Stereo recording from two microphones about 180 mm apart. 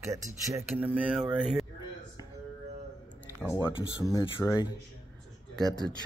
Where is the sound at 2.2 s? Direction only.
20° left (ahead or behind).